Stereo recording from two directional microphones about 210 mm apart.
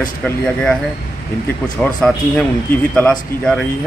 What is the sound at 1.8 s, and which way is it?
A man's voice, 5° left (ahead or behind).